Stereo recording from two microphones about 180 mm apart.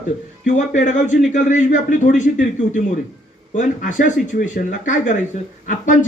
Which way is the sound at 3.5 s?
45° left (ahead or behind).